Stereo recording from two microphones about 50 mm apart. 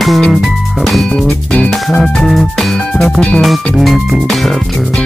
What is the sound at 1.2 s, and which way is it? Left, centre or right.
Music, left.